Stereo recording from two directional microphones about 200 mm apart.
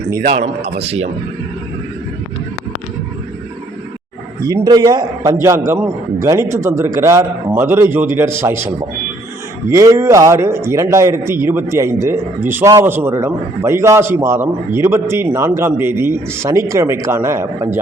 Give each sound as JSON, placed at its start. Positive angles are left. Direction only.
{"t": 0.3, "sound": "a man's voice", "side_deg": -30}
{"t": 4.4, "sound": "a man's voice", "side_deg": -20}